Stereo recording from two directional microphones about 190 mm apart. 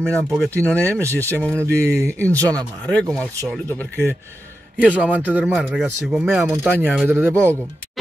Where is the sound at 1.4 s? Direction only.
5° left (ahead or behind).